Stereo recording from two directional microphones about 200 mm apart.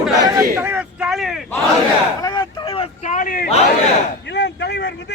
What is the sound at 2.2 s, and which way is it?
Vehicle, 20° left (ahead or behind).